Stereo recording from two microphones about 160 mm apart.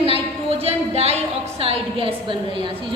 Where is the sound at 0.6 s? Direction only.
40° right (ahead or behind).